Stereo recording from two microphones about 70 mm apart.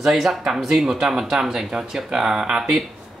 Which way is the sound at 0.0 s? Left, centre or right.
Centre.